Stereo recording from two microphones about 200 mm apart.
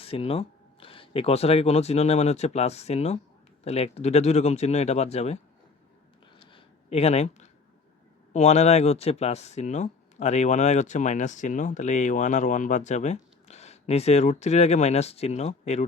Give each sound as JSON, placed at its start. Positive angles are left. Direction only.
{"t": 0.0, "sound": "speech", "side_deg": 30}
{"t": 6.5, "sound": "a sound", "side_deg": 30}
{"t": 8.3, "sound": "speech", "side_deg": 35}